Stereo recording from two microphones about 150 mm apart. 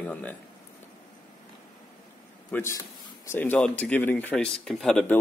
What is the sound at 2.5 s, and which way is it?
A man's voice, 20° left (ahead or behind).